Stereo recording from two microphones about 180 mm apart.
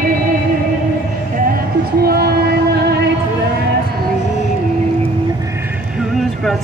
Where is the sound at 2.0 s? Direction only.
60° right (ahead or behind).